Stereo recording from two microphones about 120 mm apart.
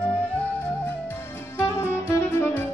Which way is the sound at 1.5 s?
20° left (ahead or behind).